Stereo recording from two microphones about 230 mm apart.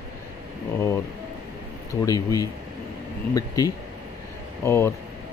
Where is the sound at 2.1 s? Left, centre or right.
Centre.